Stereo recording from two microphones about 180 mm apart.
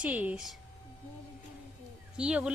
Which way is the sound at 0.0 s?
10° right (ahead or behind).